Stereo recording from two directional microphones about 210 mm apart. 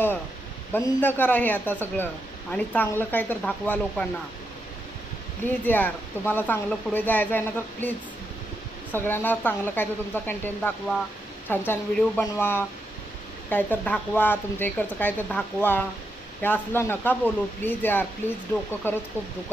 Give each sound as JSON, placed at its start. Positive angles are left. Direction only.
{"t": 0.7, "sound": "speech", "side_deg": 10}
{"t": 5.4, "sound": "speech", "side_deg": 10}
{"t": 8.9, "sound": "speech", "side_deg": 10}